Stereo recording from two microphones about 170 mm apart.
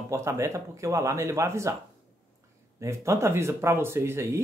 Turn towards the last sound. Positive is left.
turn(degrees=-15)  # may be behind; listen again after turning